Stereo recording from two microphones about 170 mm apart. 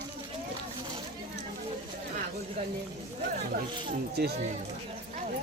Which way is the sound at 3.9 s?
70° right (ahead or behind).